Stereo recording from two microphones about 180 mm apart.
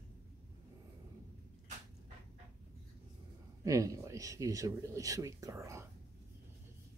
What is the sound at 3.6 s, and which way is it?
Speech, 20° right (ahead or behind).